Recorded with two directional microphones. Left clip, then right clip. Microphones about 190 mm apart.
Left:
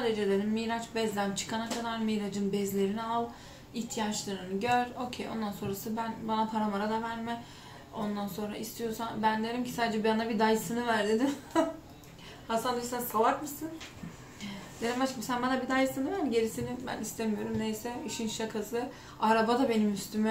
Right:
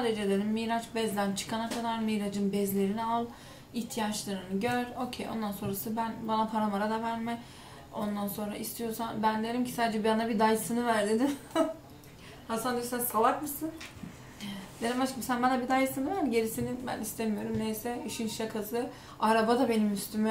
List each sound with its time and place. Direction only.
0.0 s a woman's voice: centre (ahead or behind)